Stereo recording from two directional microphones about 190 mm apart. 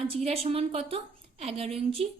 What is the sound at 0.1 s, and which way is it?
A woman's voice, 30° right (ahead or behind).